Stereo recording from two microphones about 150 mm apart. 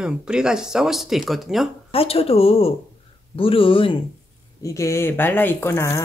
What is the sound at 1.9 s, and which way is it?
Speech, 40° left (ahead or behind).